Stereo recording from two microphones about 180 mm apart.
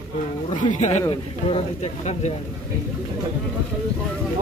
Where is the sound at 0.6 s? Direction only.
40° left (ahead or behind).